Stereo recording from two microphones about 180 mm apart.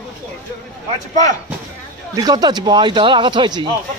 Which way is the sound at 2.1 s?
20° right (ahead or behind).